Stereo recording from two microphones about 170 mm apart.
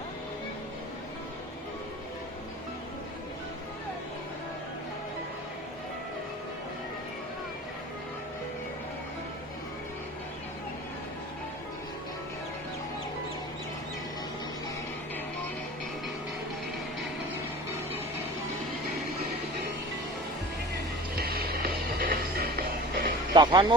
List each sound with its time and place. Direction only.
21.2 s music: 65° right (ahead or behind)
23.3 s speech: 25° right (ahead or behind)